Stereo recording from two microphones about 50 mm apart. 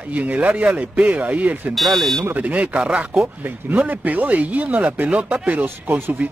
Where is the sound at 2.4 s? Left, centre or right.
Right.